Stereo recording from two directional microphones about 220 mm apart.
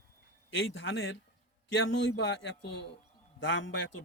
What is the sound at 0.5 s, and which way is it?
A man's voice, 60° left (ahead or behind).